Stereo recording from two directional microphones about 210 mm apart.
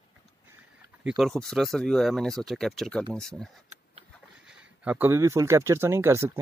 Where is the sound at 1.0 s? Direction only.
Centre (ahead or behind).